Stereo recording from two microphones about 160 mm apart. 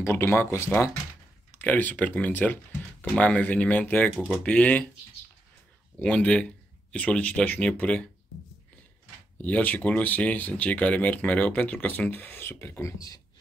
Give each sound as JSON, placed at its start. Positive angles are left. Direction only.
{"t": 0.0, "sound": "speech", "side_deg": 15}
{"t": 4.2, "sound": "speech", "side_deg": -5}
{"t": 4.5, "sound": "speech", "side_deg": 10}
{"t": 5.9, "sound": "speech", "side_deg": 5}
{"t": 9.4, "sound": "speech", "side_deg": 10}